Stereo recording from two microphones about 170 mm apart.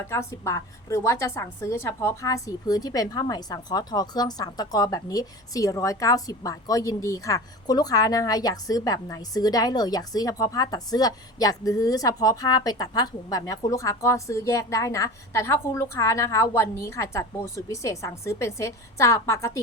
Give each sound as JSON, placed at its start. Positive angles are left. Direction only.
{"t": 0.1, "sound": "a woman's voice", "side_deg": 15}